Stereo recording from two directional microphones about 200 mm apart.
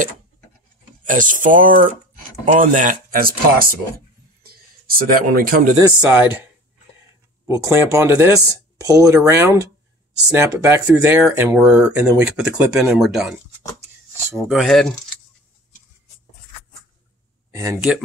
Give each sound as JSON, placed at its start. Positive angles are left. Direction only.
{"t": 1.0, "sound": "speech", "side_deg": -40}
{"t": 4.4, "sound": "a sound", "side_deg": -50}
{"t": 5.8, "sound": "speech", "side_deg": -15}
{"t": 7.4, "sound": "speech", "side_deg": -15}
{"t": 14.4, "sound": "speech", "side_deg": 0}
{"t": 17.5, "sound": "a sound", "side_deg": -15}